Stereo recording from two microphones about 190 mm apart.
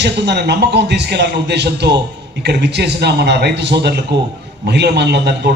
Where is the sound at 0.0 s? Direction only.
60° right (ahead or behind).